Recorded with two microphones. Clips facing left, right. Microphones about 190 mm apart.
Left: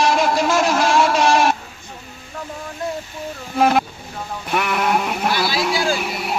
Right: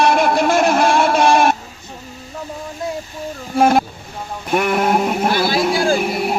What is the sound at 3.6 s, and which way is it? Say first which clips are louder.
Speech: right 3 dB; 45° right (ahead or behind).